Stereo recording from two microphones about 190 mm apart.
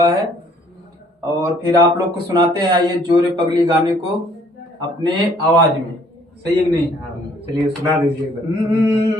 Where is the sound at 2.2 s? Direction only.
20° right (ahead or behind).